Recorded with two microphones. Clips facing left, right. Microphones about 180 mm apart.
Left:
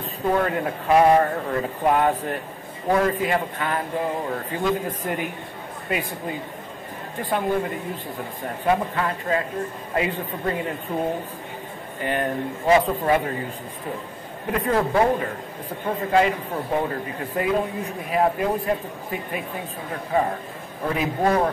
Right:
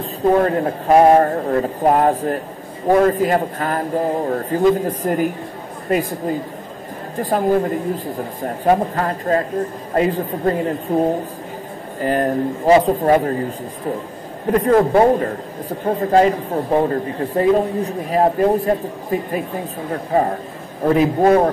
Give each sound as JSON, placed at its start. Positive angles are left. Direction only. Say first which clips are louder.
{"t": 0.0, "sound": "a man's voice", "louder": "right 7 dB", "side_deg": -35}
{"t": 14.5, "sound": "a man's voice", "louder": "right 8 dB", "side_deg": -40}